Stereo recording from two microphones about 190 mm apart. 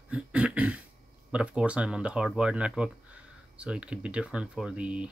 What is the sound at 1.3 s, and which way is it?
Speech, 5° right (ahead or behind).